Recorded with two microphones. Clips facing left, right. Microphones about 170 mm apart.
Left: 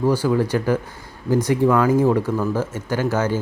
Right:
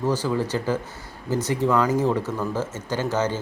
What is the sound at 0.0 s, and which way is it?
Speech, 10° left (ahead or behind).